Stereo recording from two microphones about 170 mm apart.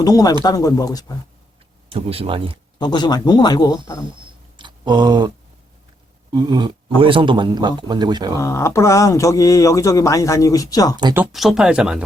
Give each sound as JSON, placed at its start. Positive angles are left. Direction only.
{"t": 0.0, "sound": "speech", "side_deg": 20}
{"t": 1.9, "sound": "speech", "side_deg": -35}
{"t": 2.7, "sound": "speech", "side_deg": 25}
{"t": 4.5, "sound": "a sound", "side_deg": -25}
{"t": 6.3, "sound": "speech", "side_deg": -25}
{"t": 8.4, "sound": "speech", "side_deg": 15}
{"t": 11.1, "sound": "speech", "side_deg": -5}